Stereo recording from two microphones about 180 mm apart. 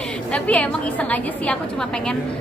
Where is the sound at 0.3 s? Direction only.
5° left (ahead or behind).